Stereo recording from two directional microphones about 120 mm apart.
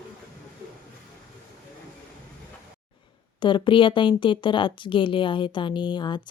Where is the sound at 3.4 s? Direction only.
40° left (ahead or behind).